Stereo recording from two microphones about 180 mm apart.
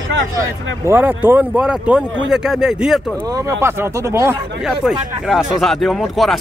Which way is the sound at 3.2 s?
20° right (ahead or behind).